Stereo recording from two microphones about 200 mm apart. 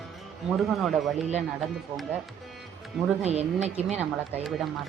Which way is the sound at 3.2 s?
30° right (ahead or behind).